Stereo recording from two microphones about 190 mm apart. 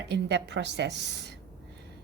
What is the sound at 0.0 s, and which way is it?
A woman's voice, 65° right (ahead or behind).